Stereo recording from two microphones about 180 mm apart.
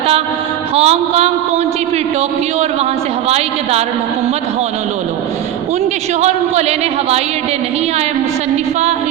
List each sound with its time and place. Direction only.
0.8 s a man's voice: 35° right (ahead or behind)
3.2 s a man's voice: 35° right (ahead or behind)
6.2 s a man's voice: 35° right (ahead or behind)